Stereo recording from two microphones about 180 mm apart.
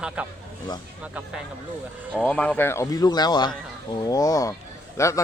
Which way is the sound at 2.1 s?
5° left (ahead or behind).